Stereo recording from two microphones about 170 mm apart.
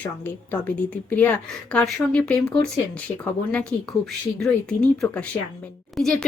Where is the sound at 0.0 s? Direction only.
10° left (ahead or behind).